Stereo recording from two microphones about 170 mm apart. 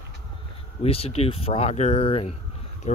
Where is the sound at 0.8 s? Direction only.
35° left (ahead or behind).